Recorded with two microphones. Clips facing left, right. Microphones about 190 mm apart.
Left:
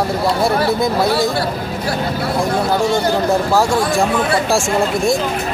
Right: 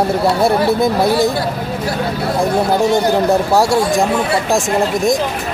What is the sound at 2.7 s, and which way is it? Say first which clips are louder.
Speech: right 2 dB; 20° right (ahead or behind).